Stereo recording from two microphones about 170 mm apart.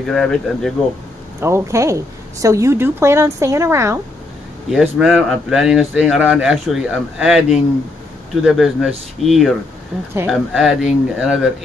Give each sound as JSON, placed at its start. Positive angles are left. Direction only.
{"t": 0.0, "sound": "speech", "side_deg": 0}
{"t": 1.4, "sound": "a woman's voice", "side_deg": -15}
{"t": 4.6, "sound": "speech", "side_deg": -5}